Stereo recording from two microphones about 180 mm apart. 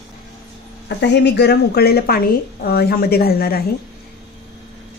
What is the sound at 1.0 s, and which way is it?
A woman's voice, 70° left (ahead or behind).